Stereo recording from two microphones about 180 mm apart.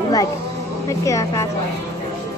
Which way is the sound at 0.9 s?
15° left (ahead or behind).